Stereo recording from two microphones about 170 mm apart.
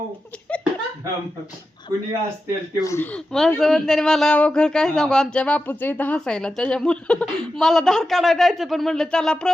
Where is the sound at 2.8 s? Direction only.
20° left (ahead or behind).